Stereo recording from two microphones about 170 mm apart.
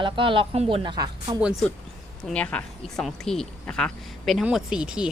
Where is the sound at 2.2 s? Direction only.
5° left (ahead or behind).